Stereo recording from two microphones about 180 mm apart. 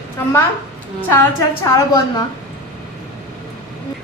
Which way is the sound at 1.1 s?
15° left (ahead or behind).